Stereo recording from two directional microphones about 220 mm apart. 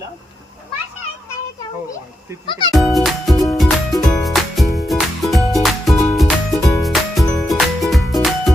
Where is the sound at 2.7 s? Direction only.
Centre (ahead or behind).